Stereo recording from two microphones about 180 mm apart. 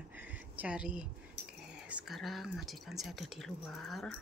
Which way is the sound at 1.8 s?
5° right (ahead or behind).